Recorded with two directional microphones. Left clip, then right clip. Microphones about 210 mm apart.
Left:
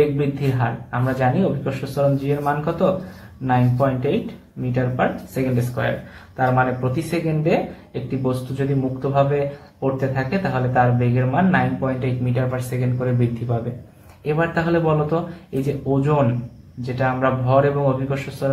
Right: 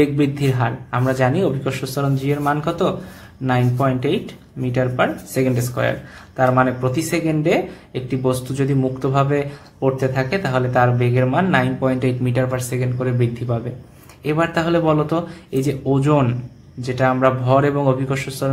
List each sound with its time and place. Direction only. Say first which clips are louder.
0.4 s speech: right 2 dB; 40° right (ahead or behind)